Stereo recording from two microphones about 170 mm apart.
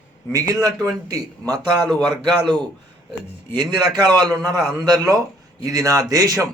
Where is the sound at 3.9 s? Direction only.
25° right (ahead or behind).